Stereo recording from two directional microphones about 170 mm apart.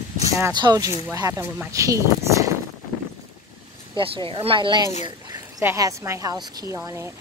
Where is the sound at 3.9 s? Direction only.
30° right (ahead or behind).